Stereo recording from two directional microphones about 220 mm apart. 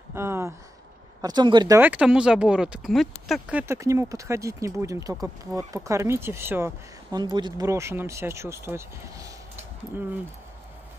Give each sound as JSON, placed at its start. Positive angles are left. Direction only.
{"t": 0.1, "sound": "speech", "side_deg": -10}
{"t": 1.8, "sound": "speech", "side_deg": -5}